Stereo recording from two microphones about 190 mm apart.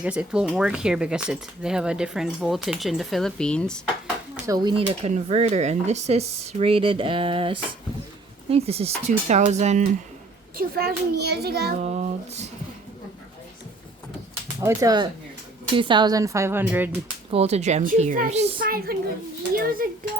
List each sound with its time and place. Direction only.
0.0 s speech: 5° right (ahead or behind)
4.4 s speech: 20° right (ahead or behind)
4.9 s speech: 35° right (ahead or behind)
10.6 s a child's voice: 55° right (ahead or behind)
11.8 s speech: 35° right (ahead or behind)
14.6 s a woman's voice: 15° right (ahead or behind)
17.3 s speech: 35° right (ahead or behind)
18.6 s a child's voice: 50° right (ahead or behind)